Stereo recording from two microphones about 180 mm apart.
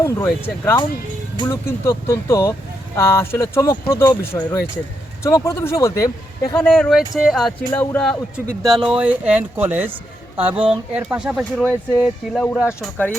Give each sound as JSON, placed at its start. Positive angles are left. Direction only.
{"t": 0.0, "sound": "speech", "side_deg": 15}
{"t": 6.7, "sound": "speech", "side_deg": 0}
{"t": 7.7, "sound": "speech", "side_deg": 10}
{"t": 8.6, "sound": "speech", "side_deg": 0}